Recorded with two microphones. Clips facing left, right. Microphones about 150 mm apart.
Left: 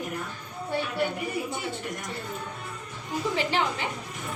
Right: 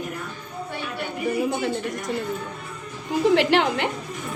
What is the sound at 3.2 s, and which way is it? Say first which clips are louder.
Speech: right 9 dB; 70° right (ahead or behind).